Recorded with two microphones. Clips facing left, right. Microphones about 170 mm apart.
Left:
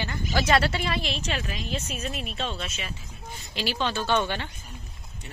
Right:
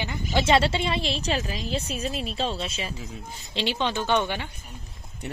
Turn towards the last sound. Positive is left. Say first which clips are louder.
# right 1 dB
turn(degrees=-15)  # may be behind; listen again after turning